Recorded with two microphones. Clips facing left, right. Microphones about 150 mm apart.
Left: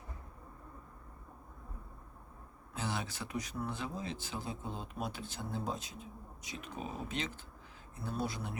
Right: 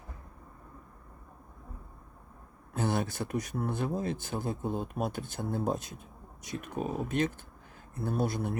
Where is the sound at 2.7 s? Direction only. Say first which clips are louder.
Right 8 dB; 50° right (ahead or behind).